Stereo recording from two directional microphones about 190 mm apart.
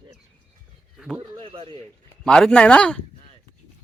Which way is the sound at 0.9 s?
Centre (ahead or behind).